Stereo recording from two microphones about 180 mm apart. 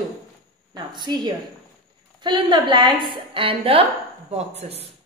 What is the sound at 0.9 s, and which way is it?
A woman's voice, 25° right (ahead or behind).